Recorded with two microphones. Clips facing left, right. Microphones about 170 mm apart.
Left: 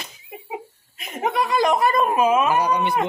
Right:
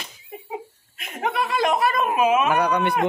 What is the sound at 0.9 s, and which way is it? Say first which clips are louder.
Chuckle: left 2 dB; centre (ahead or behind).